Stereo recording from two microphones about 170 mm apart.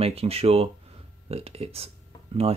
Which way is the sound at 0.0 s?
35° right (ahead or behind).